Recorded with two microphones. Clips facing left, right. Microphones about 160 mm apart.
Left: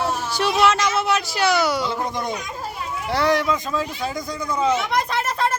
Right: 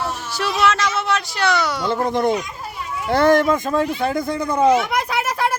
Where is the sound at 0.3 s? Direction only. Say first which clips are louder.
Even; centre (ahead or behind).